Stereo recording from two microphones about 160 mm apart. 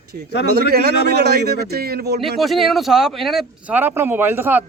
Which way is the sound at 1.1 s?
90° right.